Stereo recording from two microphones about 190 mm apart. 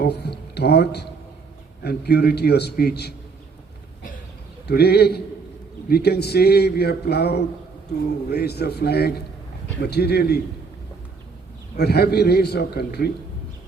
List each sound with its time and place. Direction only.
0.0 s a man's voice: 60° left (ahead or behind)
4.6 s a man's voice: 60° left (ahead or behind)
11.8 s a man's voice: 55° left (ahead or behind)